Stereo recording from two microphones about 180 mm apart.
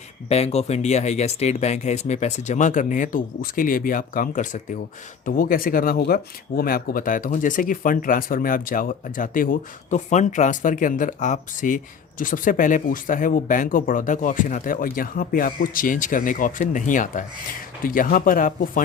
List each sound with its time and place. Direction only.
0.3 s speech: 35° left (ahead or behind)